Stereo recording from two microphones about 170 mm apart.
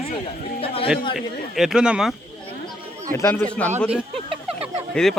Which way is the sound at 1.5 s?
5° right (ahead or behind).